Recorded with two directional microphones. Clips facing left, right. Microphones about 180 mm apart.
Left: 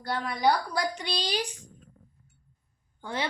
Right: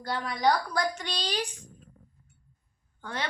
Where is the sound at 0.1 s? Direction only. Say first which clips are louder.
Left 1 dB; 10° left (ahead or behind).